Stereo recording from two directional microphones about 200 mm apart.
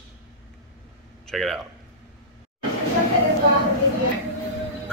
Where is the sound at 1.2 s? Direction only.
Centre (ahead or behind).